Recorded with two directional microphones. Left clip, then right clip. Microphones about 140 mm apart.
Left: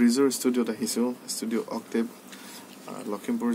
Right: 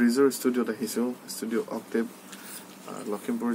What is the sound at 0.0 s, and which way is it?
Speech, 20° left (ahead or behind).